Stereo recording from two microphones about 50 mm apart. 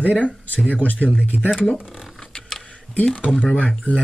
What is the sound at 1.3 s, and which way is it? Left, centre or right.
Speech, centre.